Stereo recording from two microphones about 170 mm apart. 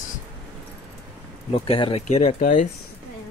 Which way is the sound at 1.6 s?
35° left (ahead or behind).